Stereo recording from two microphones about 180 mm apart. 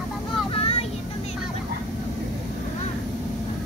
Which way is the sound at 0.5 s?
35° left (ahead or behind).